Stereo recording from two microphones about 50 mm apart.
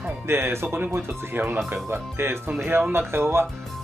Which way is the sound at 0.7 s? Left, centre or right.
Right.